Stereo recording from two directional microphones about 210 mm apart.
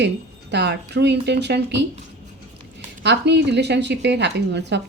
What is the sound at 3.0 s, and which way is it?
Speech, 55° right (ahead or behind).